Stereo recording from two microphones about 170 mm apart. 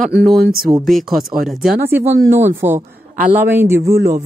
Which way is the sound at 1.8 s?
10° right (ahead or behind).